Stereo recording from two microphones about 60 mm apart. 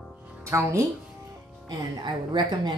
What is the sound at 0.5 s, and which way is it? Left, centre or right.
Speech, right.